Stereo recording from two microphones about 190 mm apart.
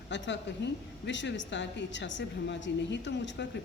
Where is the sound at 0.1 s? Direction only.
70° left (ahead or behind).